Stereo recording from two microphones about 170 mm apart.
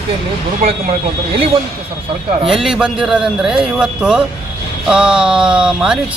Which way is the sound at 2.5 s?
Centre (ahead or behind).